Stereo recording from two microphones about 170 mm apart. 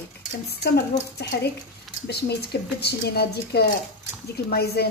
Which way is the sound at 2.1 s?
75° left (ahead or behind).